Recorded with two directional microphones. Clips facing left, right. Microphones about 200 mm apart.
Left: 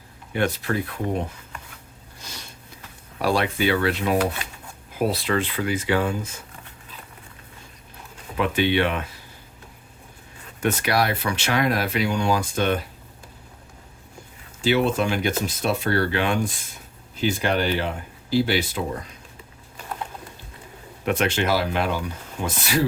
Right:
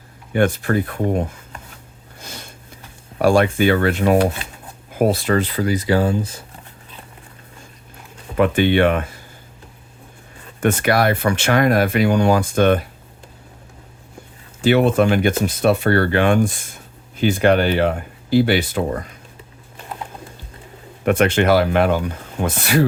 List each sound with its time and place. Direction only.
0.3 s speech: 50° right (ahead or behind)
2.1 s a sound: 55° right (ahead or behind)
3.2 s speech: 50° right (ahead or behind)
8.4 s speech: 50° right (ahead or behind)
10.6 s speech: 55° right (ahead or behind)
14.6 s speech: 55° right (ahead or behind)
21.0 s speech: 55° right (ahead or behind)